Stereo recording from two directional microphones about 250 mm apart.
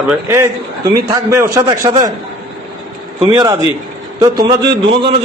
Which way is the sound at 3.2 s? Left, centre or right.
Centre.